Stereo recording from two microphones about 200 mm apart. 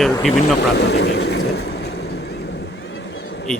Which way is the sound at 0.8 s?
55° left (ahead or behind).